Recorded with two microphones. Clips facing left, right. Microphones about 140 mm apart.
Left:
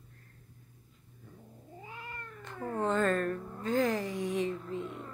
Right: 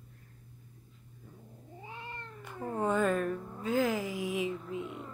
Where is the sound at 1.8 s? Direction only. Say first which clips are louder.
Right 1 dB; 25° right (ahead or behind).